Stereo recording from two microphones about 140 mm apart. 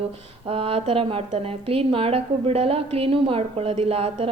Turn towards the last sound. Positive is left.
turn(degrees=-45)  # may be behind; listen again after turning